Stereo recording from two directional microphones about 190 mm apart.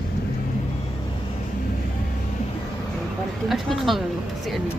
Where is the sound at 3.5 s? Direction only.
Centre (ahead or behind).